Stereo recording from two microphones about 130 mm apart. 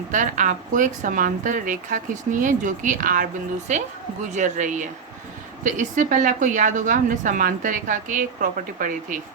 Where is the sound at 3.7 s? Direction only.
65° right (ahead or behind); by 8.3 s 90° right.